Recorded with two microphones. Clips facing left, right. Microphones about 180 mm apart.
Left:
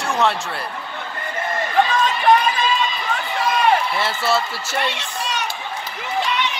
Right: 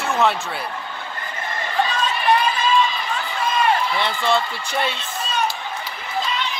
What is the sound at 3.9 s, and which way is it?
Speech, 5° left (ahead or behind).